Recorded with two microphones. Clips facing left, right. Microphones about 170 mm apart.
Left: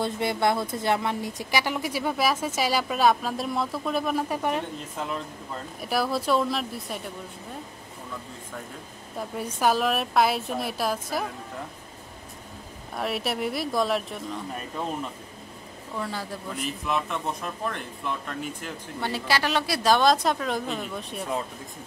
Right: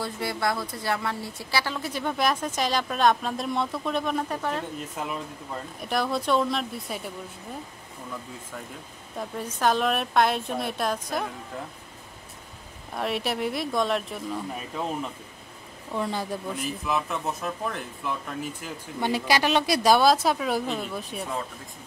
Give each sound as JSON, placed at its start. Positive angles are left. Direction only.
{"t": 0.0, "sound": "speech", "side_deg": 25}
{"t": 4.4, "sound": "speech", "side_deg": 15}
{"t": 4.9, "sound": "a woman's voice", "side_deg": -10}
{"t": 5.8, "sound": "a woman's voice", "side_deg": 5}
{"t": 9.4, "sound": "a woman's voice", "side_deg": 10}
{"t": 12.9, "sound": "a woman's voice", "side_deg": 0}
{"t": 16.0, "sound": "speech", "side_deg": -20}
{"t": 16.8, "sound": "a woman's voice", "side_deg": 0}
{"t": 18.9, "sound": "a woman's voice", "side_deg": -15}